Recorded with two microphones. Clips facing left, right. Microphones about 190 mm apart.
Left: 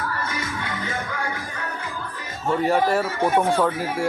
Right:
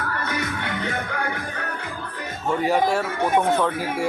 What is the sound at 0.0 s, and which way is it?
Music, 60° right (ahead or behind).